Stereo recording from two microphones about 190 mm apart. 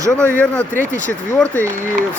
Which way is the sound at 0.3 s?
10° left (ahead or behind).